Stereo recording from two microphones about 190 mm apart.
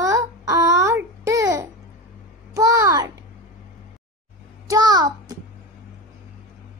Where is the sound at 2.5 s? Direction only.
20° right (ahead or behind).